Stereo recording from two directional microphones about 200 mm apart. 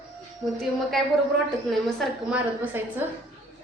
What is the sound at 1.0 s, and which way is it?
A woman's voice, centre (ahead or behind).